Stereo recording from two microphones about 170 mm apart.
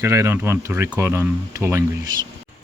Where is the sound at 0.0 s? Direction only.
20° right (ahead or behind).